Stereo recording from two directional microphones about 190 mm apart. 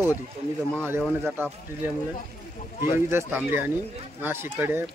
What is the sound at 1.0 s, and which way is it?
Speech, centre (ahead or behind).